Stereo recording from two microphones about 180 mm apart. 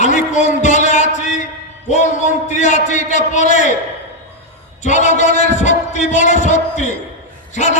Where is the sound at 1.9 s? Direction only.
40° left (ahead or behind).